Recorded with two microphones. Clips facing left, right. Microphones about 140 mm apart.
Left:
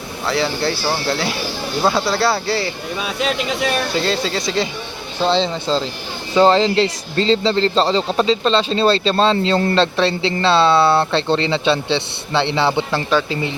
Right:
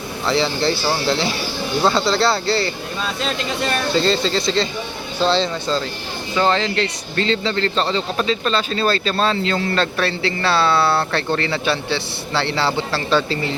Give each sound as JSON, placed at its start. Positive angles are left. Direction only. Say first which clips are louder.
{"t": 0.3, "sound": "speech", "louder": "right 1 dB", "side_deg": 5}
{"t": 5.2, "sound": "speech", "louder": "left 1 dB", "side_deg": 20}